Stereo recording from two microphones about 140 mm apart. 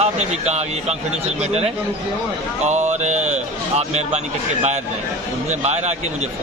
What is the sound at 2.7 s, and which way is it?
A man's voice, 55° right (ahead or behind).